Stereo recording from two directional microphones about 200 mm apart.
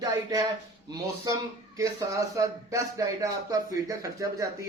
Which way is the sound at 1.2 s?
15° right (ahead or behind).